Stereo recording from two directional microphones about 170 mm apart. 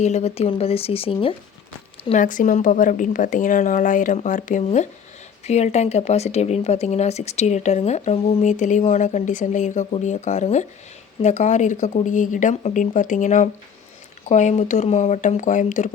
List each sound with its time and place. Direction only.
0.0 s speech: 40° left (ahead or behind)
2.1 s speech: 50° left (ahead or behind)